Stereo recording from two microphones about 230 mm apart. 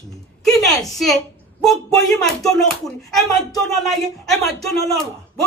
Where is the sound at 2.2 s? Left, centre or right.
Centre.